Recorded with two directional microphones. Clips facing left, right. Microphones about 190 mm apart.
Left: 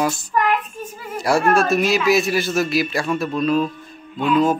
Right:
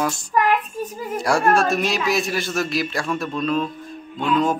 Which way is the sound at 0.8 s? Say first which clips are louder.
Right 5 dB; 40° right (ahead or behind).